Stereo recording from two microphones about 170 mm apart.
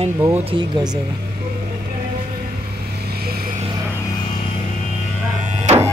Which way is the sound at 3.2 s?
65° right (ahead or behind).